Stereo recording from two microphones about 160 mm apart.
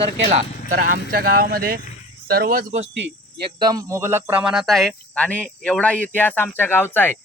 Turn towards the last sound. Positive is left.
turn(degrees=15)  # may be behind; listen again after turning